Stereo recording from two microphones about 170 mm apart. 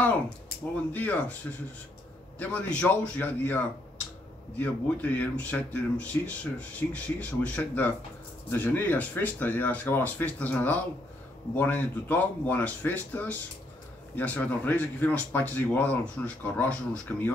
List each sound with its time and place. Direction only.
0.9 s speech: 10° left (ahead or behind)